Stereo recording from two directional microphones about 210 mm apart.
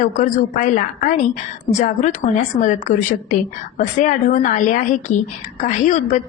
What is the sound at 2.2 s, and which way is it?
A woman's voice, 35° left (ahead or behind).